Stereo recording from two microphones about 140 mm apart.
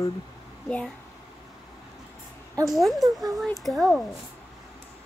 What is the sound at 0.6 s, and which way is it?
Speech, 10° left (ahead or behind).